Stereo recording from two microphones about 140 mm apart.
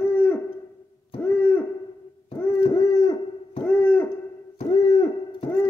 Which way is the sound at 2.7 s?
25° left (ahead or behind).